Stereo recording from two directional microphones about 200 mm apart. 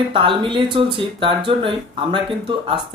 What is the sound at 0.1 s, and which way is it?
Speech, 25° right (ahead or behind).